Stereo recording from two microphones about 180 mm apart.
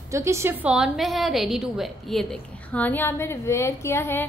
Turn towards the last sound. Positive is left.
turn(degrees=15)  # may be behind; listen again after turning